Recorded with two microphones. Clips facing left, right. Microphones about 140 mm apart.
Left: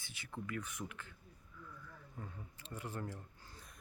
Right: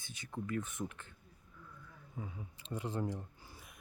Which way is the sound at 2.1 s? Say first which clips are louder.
Right 5 dB; 10° right (ahead or behind).